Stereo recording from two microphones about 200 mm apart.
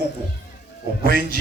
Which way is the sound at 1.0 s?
45° right (ahead or behind).